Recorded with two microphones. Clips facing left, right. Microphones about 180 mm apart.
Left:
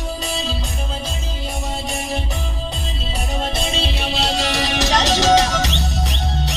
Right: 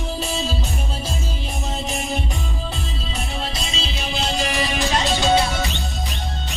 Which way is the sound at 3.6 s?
60° left (ahead or behind).